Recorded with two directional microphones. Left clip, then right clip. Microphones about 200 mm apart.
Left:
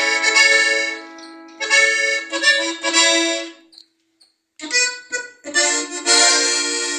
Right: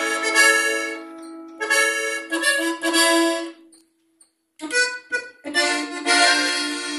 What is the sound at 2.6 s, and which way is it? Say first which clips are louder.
Music: left 2 dB; 15° right (ahead or behind).